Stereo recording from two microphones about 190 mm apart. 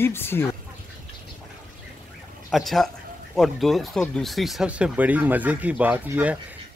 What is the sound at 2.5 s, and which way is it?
Speech, centre (ahead or behind).